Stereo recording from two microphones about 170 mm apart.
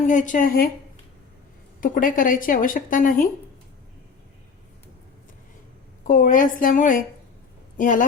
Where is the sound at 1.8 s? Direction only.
55° left (ahead or behind).